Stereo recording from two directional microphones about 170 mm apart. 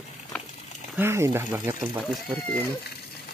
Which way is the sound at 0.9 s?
15° right (ahead or behind).